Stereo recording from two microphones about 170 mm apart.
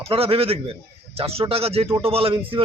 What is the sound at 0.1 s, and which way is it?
A man's voice, 35° right (ahead or behind).